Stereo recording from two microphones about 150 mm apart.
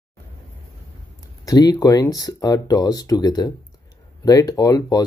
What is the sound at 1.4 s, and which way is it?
Speech, 25° left (ahead or behind).